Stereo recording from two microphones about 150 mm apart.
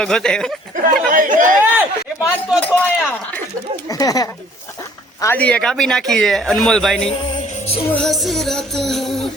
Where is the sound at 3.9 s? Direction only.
25° left (ahead or behind).